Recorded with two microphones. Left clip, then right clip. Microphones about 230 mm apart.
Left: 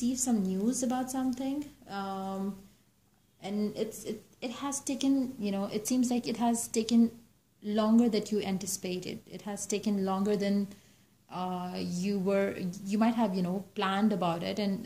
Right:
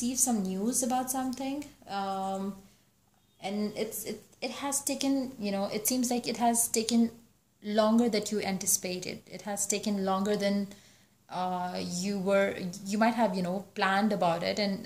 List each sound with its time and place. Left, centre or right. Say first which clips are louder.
0.0 s a woman's voice: right 1 dB; centre